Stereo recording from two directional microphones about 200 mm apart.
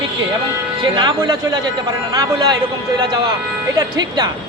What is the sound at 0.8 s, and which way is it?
A man's voice, 20° right (ahead or behind).